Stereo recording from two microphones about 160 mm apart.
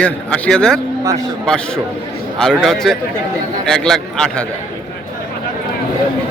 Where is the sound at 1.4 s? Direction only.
5° left (ahead or behind).